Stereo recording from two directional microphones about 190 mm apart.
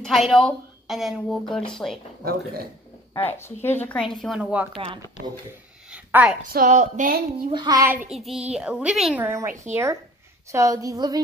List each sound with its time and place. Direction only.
0.0 s a woman's voice: centre (ahead or behind)
3.2 s a woman's voice: 10° left (ahead or behind); by 4.6 s 5° right (ahead or behind)
4.7 s a woman's voice: 30° right (ahead or behind)
5.9 s a sound: 5° right (ahead or behind)
6.5 s speech: 40° right (ahead or behind)
7.5 s a woman's voice: 20° right (ahead or behind)